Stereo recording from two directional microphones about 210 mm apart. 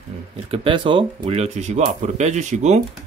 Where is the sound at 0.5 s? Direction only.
25° right (ahead or behind).